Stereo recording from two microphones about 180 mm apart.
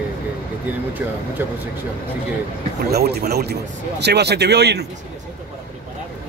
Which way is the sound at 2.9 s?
60° right (ahead or behind).